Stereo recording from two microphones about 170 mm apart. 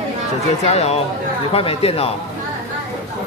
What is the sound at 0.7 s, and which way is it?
A man's voice, 40° left (ahead or behind).